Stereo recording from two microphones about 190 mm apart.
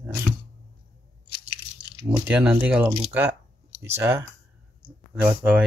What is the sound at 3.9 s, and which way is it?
Speech, 15° right (ahead or behind).